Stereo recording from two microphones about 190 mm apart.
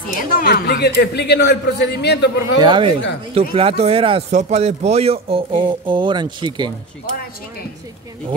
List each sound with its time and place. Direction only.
0.2 s speech: 50° left (ahead or behind)
2.4 s a man's voice: 25° right (ahead or behind)